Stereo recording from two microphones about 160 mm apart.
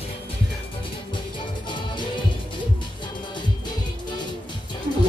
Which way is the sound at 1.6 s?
30° left (ahead or behind).